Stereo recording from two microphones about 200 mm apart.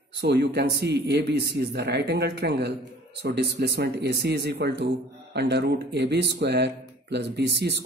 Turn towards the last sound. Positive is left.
turn(degrees=-55)  # may be behind; listen again after turning